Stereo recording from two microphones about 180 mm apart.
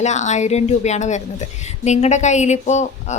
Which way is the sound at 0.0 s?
40° left (ahead or behind).